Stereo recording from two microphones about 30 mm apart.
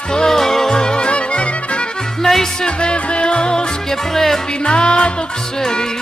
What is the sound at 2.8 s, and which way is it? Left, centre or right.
Music, left.